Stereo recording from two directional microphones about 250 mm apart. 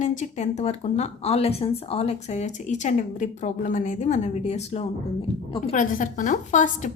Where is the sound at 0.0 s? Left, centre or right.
Left.